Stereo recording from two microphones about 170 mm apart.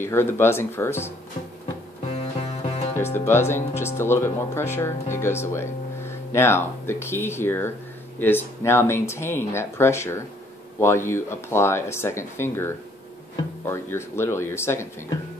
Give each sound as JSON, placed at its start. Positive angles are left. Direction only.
{"t": 0.0, "sound": "speech", "side_deg": 15}
{"t": 2.0, "sound": "music", "side_deg": 35}
{"t": 3.0, "sound": "speech", "side_deg": 15}